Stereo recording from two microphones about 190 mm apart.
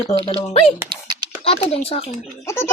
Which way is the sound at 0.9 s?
25° right (ahead or behind).